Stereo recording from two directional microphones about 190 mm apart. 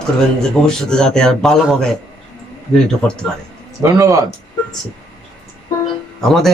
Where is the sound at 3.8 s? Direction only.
15° right (ahead or behind).